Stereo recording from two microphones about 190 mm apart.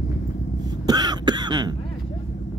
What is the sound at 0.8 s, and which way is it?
Throat clearing, 20° right (ahead or behind).